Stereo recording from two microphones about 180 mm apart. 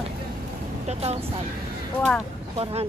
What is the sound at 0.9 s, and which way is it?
Speech, 35° right (ahead or behind).